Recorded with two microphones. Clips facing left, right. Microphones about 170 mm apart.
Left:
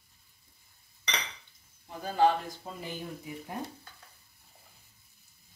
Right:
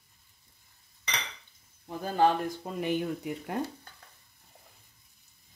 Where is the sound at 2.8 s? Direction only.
70° right (ahead or behind).